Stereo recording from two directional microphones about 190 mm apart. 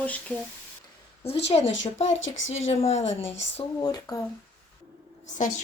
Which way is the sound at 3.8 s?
20° left (ahead or behind).